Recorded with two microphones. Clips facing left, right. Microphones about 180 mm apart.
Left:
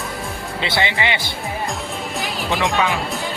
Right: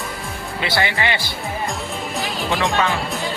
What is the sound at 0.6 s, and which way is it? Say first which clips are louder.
Speech: even; 25° left (ahead or behind).